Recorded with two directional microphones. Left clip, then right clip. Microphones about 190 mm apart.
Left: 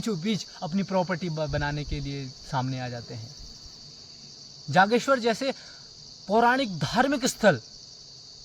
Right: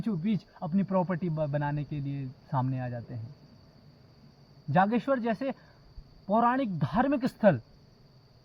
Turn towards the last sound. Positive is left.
turn(degrees=25)  # may be behind; listen again after turning